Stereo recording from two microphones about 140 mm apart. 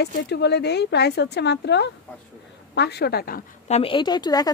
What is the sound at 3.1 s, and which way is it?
Speech, 90° left.